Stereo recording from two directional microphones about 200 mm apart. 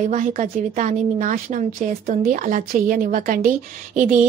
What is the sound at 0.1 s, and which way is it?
A woman's voice, 40° right (ahead or behind).